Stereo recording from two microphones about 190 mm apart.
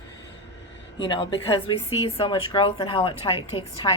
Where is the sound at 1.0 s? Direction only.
25° left (ahead or behind).